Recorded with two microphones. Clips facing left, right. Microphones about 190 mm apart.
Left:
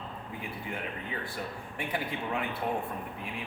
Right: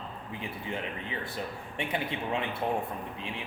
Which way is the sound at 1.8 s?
25° right (ahead or behind).